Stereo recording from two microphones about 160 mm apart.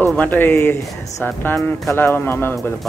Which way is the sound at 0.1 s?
10° left (ahead or behind).